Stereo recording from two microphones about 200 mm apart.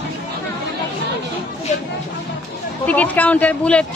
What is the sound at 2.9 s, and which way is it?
Speech, 5° left (ahead or behind).